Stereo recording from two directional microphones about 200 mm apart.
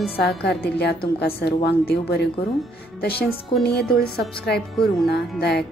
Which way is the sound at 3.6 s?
55° left (ahead or behind).